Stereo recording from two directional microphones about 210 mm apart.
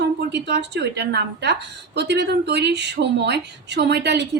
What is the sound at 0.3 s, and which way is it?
Speech, 55° right (ahead or behind).